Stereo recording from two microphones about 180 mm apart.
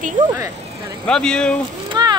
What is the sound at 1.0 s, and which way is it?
Speech, 5° left (ahead or behind).